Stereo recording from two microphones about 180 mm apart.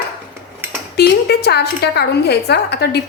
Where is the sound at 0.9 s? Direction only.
65° left (ahead or behind).